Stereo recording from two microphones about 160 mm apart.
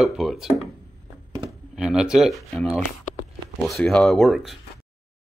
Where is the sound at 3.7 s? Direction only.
Centre (ahead or behind).